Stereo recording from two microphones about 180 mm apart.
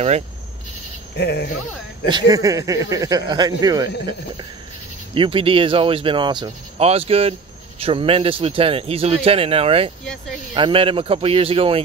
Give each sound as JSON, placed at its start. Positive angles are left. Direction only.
{"t": 1.1, "sound": "speech", "side_deg": 65}
{"t": 2.0, "sound": "speech", "side_deg": -25}
{"t": 5.1, "sound": "speech", "side_deg": -30}